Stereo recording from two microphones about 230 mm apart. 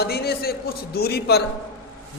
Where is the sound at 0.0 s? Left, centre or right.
Left.